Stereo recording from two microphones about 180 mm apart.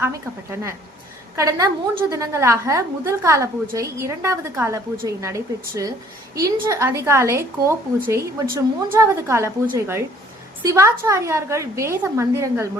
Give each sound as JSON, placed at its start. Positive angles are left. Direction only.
{"t": 1.4, "sound": "a woman's voice", "side_deg": -20}